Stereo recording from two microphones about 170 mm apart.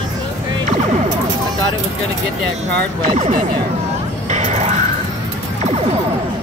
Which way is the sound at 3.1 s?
40° right (ahead or behind).